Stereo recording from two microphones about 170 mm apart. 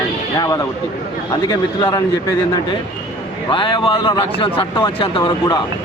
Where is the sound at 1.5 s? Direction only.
20° left (ahead or behind).